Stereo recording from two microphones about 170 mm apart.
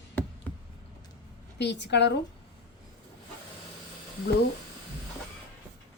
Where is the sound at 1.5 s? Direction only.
90° left.